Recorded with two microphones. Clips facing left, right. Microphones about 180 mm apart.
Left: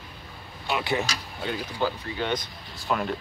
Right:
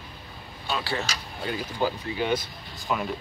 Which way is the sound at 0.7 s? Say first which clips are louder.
Left 3 dB; 20° left (ahead or behind).